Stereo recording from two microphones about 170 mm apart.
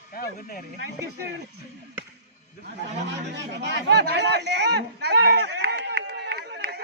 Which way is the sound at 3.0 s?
90° right.